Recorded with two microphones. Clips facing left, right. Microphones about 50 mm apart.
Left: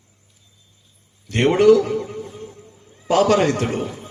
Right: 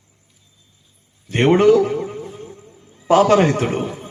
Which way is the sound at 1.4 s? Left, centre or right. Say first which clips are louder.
Right 1 dB; right.